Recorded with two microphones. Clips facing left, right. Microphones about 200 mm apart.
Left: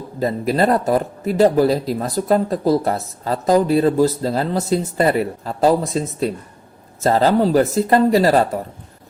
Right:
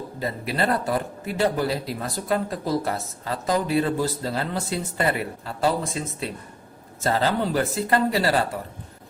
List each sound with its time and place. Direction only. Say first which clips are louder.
0.2 s speech: left 9 dB; 40° left (ahead or behind)